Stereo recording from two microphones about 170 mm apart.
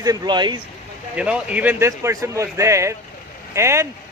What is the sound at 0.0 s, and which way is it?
Speech, 20° right (ahead or behind).